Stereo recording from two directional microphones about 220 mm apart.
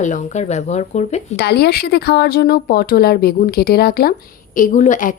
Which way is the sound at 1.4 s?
50° left (ahead or behind).